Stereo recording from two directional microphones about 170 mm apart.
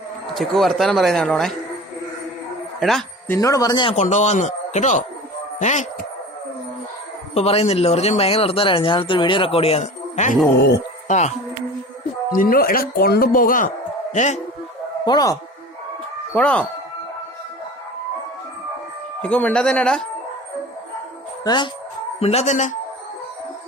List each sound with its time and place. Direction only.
0.3 s speech: centre (ahead or behind)
3.2 s speech: 15° left (ahead or behind)
3.9 s speech: 45° left (ahead or behind)
7.3 s speech: 40° left (ahead or behind)
12.3 s speech: 55° left (ahead or behind)
15.0 s speech: 20° left (ahead or behind)
16.3 s speech: 5° left (ahead or behind)
19.2 s speech: 10° left (ahead or behind)
21.4 s speech: 25° left (ahead or behind)
22.2 s speech: 40° left (ahead or behind)